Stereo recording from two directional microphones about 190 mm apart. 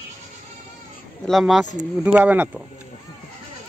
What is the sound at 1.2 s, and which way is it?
Speech, centre (ahead or behind).